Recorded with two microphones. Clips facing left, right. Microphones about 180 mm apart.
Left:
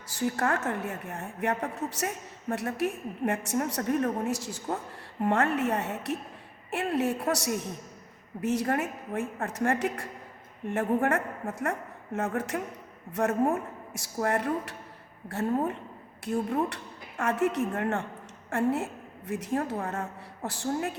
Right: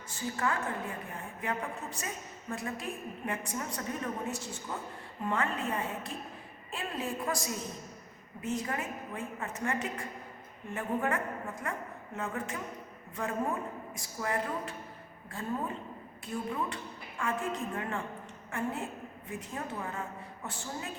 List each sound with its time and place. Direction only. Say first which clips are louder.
0.1 s a woman's voice: left 6 dB; 80° left
4.3 s a woman's voice: left 6 dB; 90° left
5.2 s a woman's voice: left 7 dB; 70° left (ahead or behind)
16.3 s speech: left 7 dB; 45° left (ahead or behind)
16.6 s a woman's voice: left 3 dB; 80° left